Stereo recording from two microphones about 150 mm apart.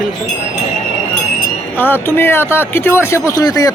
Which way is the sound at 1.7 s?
15° left (ahead or behind).